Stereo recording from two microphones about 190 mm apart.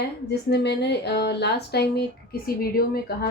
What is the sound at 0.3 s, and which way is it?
Speech, 60° left (ahead or behind).